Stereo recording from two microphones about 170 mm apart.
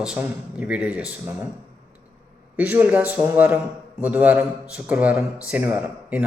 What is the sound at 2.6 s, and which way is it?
Speech, 10° right (ahead or behind).